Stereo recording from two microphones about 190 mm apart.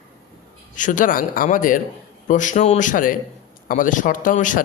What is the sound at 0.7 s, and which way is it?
A man's voice, 45° left (ahead or behind).